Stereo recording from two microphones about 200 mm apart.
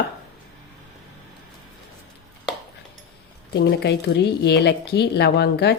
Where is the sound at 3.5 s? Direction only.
55° left (ahead or behind).